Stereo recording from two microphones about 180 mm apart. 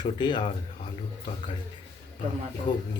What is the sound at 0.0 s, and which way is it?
Speech, 25° left (ahead or behind).